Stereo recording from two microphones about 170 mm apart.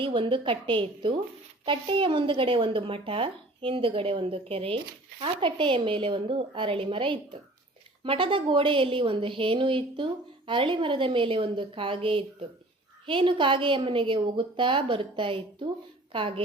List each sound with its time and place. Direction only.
0.0 s a woman's voice: 30° right (ahead or behind)